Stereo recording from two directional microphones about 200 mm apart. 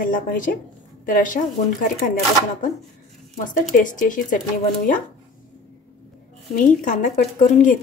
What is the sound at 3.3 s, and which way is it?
A woman's voice, 40° left (ahead or behind).